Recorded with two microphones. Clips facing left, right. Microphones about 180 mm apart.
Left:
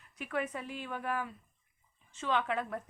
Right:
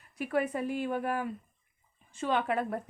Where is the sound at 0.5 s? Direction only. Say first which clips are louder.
Right 9 dB; 45° right (ahead or behind).